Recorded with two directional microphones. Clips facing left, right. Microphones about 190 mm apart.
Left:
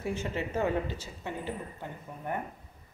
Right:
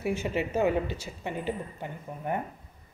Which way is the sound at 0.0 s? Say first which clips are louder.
Right 4 dB; 10° right (ahead or behind).